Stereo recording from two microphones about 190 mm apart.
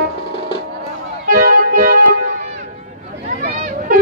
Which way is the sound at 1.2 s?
45° right (ahead or behind).